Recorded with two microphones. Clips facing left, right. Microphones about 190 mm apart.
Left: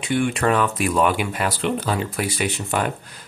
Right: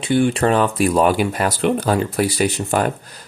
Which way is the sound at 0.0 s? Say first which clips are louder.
Right 4 dB; 30° right (ahead or behind).